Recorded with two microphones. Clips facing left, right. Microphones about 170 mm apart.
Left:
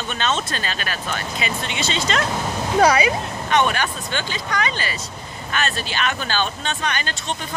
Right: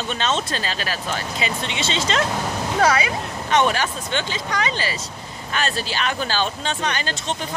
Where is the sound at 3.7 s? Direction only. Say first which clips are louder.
Right 1 dB; 25° right (ahead or behind).